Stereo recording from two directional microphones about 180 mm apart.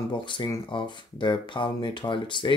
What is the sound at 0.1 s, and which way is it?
Speech, 25° left (ahead or behind).